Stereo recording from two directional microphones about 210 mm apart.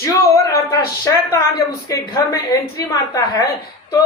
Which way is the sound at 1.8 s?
15° left (ahead or behind).